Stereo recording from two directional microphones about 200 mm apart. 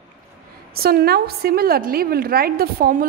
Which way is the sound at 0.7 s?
50° right (ahead or behind).